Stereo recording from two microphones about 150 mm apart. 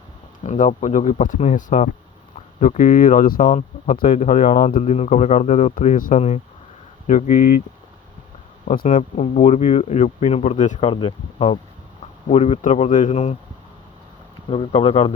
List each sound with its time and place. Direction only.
0.4 s speech: 50° left (ahead or behind); by 4.2 s 70° left (ahead or behind)
4.2 s speech: 55° left (ahead or behind)
8.6 s speech: 70° left (ahead or behind)
8.9 s speech: 45° left (ahead or behind)
14.5 s speech: 40° left (ahead or behind)